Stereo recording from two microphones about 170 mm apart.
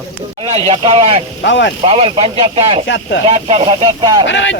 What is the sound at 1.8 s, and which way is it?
Speech, 35° right (ahead or behind).